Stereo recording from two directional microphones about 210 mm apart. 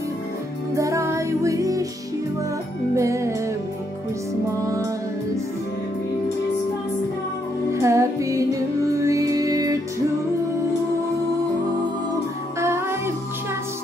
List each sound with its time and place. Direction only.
0.7 s music: 15° right (ahead or behind)
2.9 s music: 15° right (ahead or behind)
4.5 s music: 15° right (ahead or behind)
7.7 s music: 15° right (ahead or behind)
12.5 s music: 10° right (ahead or behind)